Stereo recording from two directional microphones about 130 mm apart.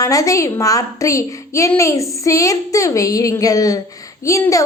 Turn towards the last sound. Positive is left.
turn(degrees=25)  # may be behind; listen again after turning